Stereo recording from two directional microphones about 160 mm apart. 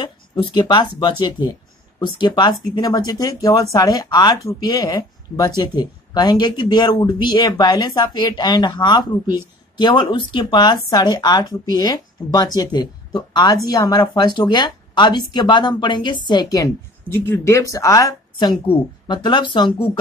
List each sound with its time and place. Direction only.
0.0 s a woman's voice: 30° left (ahead or behind)